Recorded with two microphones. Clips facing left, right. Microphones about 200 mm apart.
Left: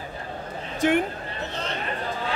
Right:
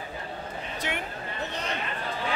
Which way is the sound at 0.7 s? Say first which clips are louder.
Left 14 dB; 50° left (ahead or behind).